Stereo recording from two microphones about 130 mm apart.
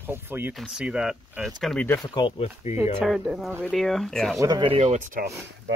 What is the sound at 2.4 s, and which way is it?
Speech, 55° left (ahead or behind).